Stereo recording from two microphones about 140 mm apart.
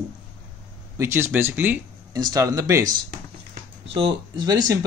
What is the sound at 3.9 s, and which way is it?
Speech, 40° right (ahead or behind).